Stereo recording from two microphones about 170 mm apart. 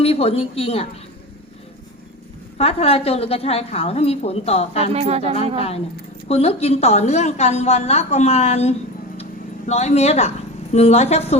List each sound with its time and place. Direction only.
0.0 s a woman's voice: 35° left (ahead or behind)
2.6 s a woman's voice: 35° left (ahead or behind)
4.9 s speech: 40° right (ahead or behind)
5.5 s a woman's voice: 35° left (ahead or behind)